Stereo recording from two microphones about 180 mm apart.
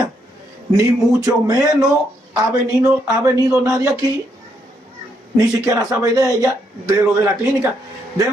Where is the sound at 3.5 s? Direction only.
15° right (ahead or behind).